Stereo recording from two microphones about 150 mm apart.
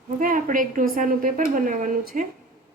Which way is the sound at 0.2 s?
65° right (ahead or behind).